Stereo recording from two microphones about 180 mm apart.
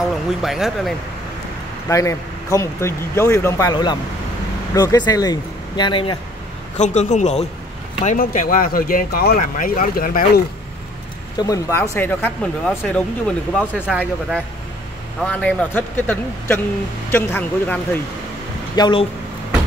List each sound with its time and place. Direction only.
0.1 s speech: centre (ahead or behind)
1.9 s speech: 15° left (ahead or behind)
3.7 s speech: 25° left (ahead or behind)
6.8 s a man's voice: 40° left (ahead or behind)
11.3 s speech: 20° left (ahead or behind)
18.8 s speech: 25° left (ahead or behind)